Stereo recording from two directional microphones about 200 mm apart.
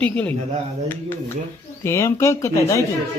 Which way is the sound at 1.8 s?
15° left (ahead or behind).